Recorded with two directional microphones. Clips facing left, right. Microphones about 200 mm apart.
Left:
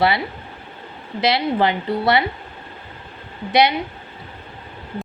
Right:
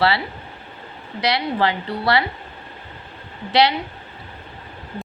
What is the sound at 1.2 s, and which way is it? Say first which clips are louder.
Speech: left 2 dB; 25° left (ahead or behind).